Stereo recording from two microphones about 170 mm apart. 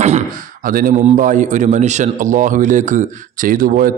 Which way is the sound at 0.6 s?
55° right (ahead or behind).